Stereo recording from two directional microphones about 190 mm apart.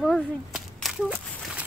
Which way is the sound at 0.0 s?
Centre (ahead or behind).